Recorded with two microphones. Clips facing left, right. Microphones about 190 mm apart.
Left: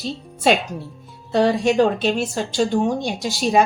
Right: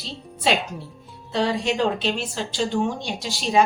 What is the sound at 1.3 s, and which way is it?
Speech, 50° left (ahead or behind).